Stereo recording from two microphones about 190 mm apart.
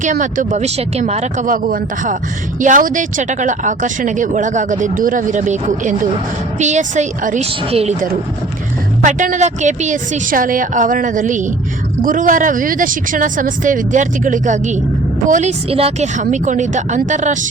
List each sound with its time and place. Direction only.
0.0 s speech: 40° right (ahead or behind)
9.0 s speech: 40° right (ahead or behind)